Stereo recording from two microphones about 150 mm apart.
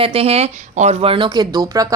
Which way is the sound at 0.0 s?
40° right (ahead or behind).